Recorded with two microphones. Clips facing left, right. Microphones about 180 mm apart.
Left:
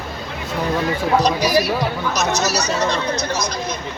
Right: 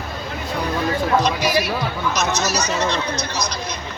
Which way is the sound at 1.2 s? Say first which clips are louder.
Left 3 dB; 40° left (ahead or behind).